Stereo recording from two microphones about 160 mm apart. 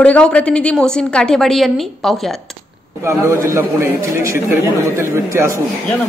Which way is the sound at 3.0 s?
15° right (ahead or behind).